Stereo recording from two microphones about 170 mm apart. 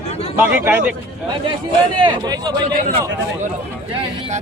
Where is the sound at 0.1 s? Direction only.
35° left (ahead or behind).